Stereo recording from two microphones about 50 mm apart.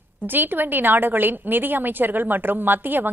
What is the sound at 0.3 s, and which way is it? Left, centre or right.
A woman's voice, right.